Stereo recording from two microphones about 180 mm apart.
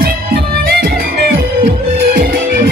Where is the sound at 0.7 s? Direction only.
60° right (ahead or behind).